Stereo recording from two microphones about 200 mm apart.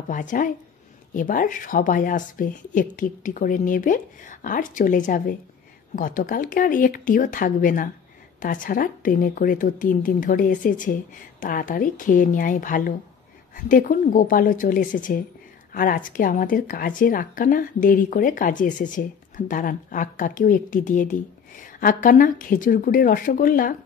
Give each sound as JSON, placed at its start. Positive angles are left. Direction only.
{"t": 0.1, "sound": "a woman's voice", "side_deg": 40}